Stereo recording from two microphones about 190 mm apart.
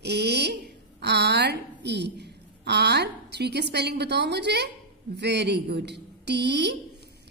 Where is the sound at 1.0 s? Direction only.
60° right (ahead or behind).